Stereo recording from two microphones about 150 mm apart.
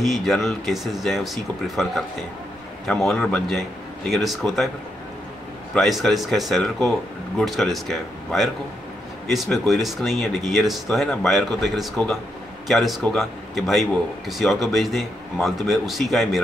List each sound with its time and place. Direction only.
0.0 s speech: centre (ahead or behind)
5.8 s speech: centre (ahead or behind)